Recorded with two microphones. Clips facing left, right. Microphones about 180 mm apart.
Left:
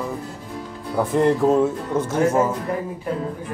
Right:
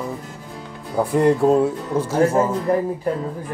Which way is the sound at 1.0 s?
10° right (ahead or behind).